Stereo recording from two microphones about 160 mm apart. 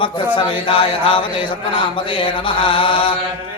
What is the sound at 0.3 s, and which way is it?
Speech, 35° left (ahead or behind).